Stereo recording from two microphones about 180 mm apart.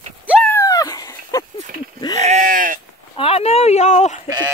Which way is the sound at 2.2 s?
40° right (ahead or behind).